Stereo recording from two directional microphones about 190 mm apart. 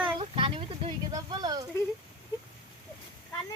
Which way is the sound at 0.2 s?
25° right (ahead or behind).